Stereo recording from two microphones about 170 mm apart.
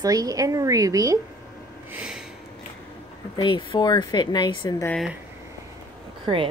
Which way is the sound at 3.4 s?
30° left (ahead or behind).